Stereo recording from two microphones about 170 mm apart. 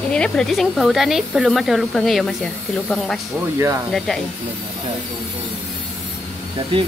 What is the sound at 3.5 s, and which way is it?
Speech, 15° right (ahead or behind).